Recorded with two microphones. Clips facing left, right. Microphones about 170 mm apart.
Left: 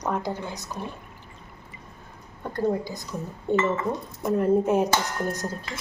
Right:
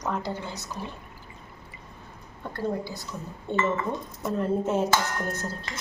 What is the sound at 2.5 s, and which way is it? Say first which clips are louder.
Speech: left 4 dB; 15° left (ahead or behind).